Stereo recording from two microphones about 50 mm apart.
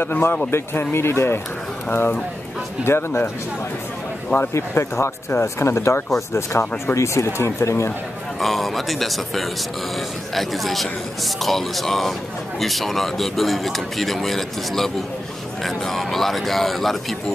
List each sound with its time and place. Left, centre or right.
0.0 s speech: left
4.6 s speech: left
8.4 s speech: centre